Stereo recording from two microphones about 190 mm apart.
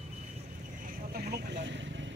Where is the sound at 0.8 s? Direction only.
55° right (ahead or behind); by 2.0 s 75° right (ahead or behind).